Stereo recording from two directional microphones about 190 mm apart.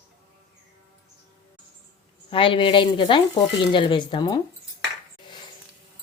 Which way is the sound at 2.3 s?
25° left (ahead or behind).